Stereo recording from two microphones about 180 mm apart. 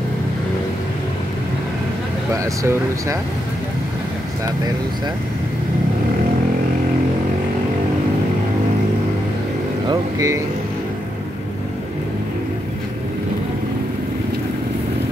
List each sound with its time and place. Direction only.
2.3 s speech: 20° right (ahead or behind)
9.8 s speech: 15° right (ahead or behind)